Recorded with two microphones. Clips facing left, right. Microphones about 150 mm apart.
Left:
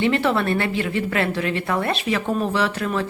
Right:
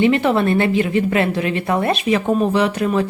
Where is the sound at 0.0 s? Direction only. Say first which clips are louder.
Right 5 dB; 20° right (ahead or behind).